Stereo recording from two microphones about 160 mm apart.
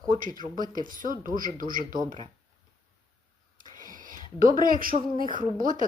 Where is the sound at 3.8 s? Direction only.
55° right (ahead or behind).